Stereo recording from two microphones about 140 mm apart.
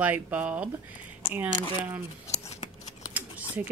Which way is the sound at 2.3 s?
25° left (ahead or behind).